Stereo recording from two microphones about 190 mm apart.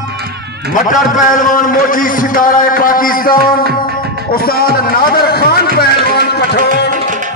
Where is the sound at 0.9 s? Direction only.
45° left (ahead or behind).